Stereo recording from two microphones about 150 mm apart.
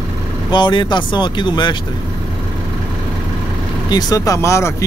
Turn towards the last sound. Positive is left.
turn(degrees=20)  # may be behind; listen again after turning